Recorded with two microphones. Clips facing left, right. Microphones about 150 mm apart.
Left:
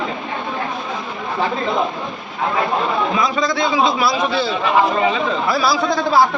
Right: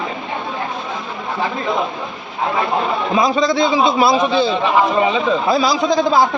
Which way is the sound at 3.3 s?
25° right (ahead or behind).